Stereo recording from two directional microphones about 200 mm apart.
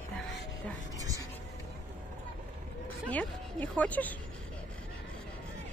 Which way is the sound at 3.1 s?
5° left (ahead or behind).